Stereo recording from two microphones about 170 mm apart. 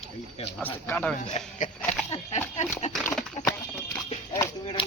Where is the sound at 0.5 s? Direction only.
10° left (ahead or behind).